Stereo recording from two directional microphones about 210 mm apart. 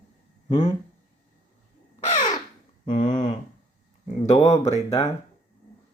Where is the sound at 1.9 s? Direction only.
30° left (ahead or behind).